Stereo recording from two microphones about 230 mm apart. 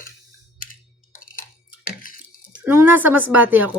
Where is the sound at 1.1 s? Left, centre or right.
Left.